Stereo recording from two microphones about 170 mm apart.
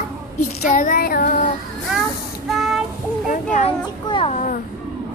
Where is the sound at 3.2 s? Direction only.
50° left (ahead or behind).